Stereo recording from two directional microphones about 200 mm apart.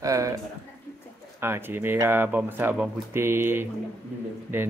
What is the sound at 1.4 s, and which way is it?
Speech, 10° right (ahead or behind).